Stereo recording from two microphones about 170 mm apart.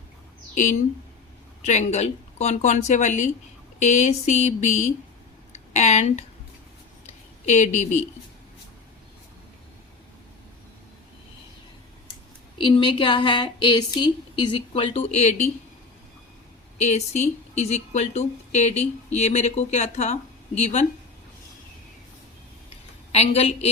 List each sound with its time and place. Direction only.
0.5 s a woman's voice: 45° left (ahead or behind)
7.4 s speech: 45° left (ahead or behind)
12.6 s speech: 30° left (ahead or behind)
16.7 s a woman's voice: 40° left (ahead or behind)
23.1 s a woman's voice: 40° left (ahead or behind)